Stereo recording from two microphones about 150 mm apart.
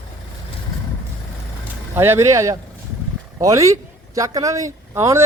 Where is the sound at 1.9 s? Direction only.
15° right (ahead or behind).